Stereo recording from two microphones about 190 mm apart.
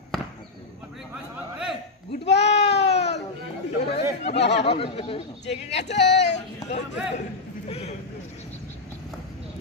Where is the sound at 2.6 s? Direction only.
60° left (ahead or behind).